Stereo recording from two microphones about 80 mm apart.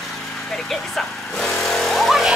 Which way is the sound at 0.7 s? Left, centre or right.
Centre.